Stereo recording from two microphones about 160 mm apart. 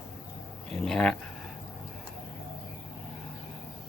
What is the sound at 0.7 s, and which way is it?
Speech, centre (ahead or behind).